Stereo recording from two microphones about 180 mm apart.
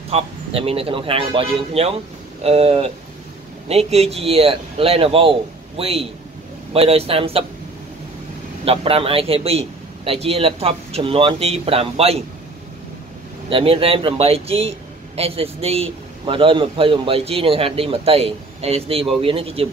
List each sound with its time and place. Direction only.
0.1 s a man's voice: 35° right (ahead or behind)
8.6 s a man's voice: 30° right (ahead or behind)
13.5 s a man's voice: 30° right (ahead or behind)